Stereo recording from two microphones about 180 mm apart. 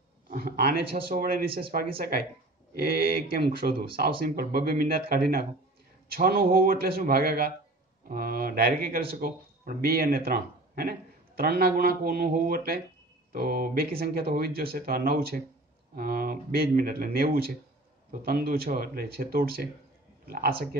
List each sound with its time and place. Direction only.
0.3 s a man's voice: 55° right (ahead or behind)